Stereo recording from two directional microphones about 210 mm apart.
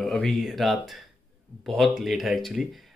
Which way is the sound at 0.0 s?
Centre (ahead or behind).